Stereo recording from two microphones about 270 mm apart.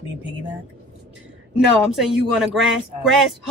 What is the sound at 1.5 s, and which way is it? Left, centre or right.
Speech, centre.